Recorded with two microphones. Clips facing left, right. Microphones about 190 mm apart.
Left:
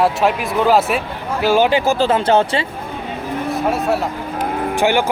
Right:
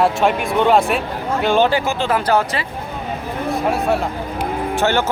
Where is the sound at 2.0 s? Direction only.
25° left (ahead or behind).